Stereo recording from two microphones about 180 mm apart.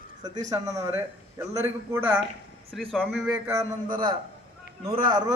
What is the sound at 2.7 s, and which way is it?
Speech, 5° left (ahead or behind).